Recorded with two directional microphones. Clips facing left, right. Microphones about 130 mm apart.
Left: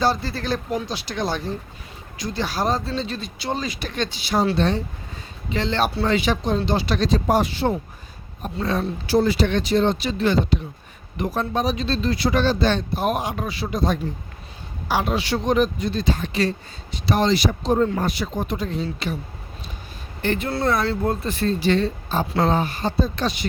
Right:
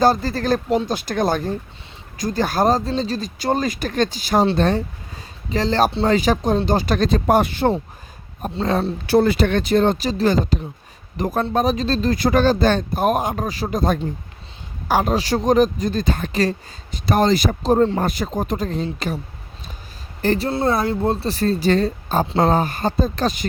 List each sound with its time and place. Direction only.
0.0 s speech: 45° right (ahead or behind)
9.0 s speech: 55° right (ahead or behind)
20.2 s speech: 35° right (ahead or behind)
20.5 s speech: 25° right (ahead or behind); by 23.5 s 45° right (ahead or behind)